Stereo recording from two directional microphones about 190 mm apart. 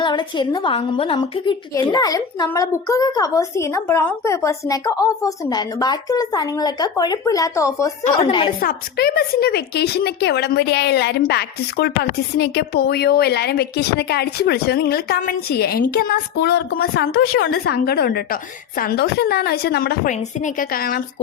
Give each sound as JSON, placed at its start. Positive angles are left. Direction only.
{"t": 0.0, "sound": "a woman's voice", "side_deg": 25}
{"t": 8.6, "sound": "a woman's voice", "side_deg": 55}
{"t": 16.9, "sound": "a woman's voice", "side_deg": 90}
{"t": 17.5, "sound": "a woman's voice", "side_deg": 55}